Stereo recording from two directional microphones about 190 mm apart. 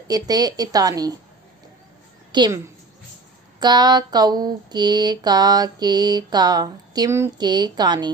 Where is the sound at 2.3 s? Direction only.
20° right (ahead or behind).